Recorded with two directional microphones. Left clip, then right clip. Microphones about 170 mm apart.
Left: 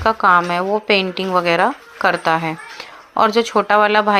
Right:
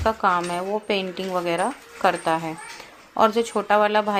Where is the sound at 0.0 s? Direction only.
25° left (ahead or behind).